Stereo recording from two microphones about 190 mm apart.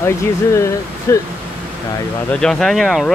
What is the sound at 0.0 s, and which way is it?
Speech, 15° left (ahead or behind).